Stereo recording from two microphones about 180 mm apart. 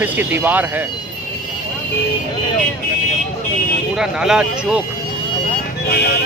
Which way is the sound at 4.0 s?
5° right (ahead or behind).